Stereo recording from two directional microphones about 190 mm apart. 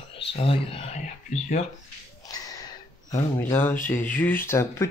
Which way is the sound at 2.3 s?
20° left (ahead or behind).